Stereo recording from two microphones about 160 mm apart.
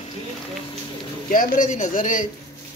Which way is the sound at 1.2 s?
60° left (ahead or behind).